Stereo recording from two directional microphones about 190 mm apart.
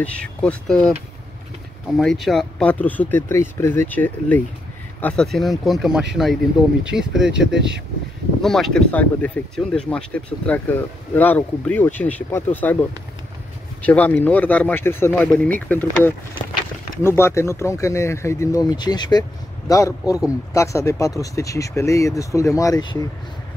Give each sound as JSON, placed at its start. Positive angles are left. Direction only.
{"t": 0.0, "sound": "speech", "side_deg": 5}
{"t": 2.0, "sound": "speech", "side_deg": 0}
{"t": 8.4, "sound": "speech", "side_deg": 0}
{"t": 13.8, "sound": "speech", "side_deg": 10}